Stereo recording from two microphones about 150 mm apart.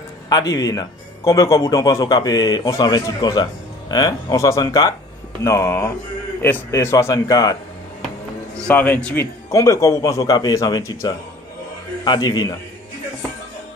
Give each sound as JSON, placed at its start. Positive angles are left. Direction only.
{"t": 0.3, "sound": "speech", "side_deg": 25}
{"t": 8.6, "sound": "speech", "side_deg": 10}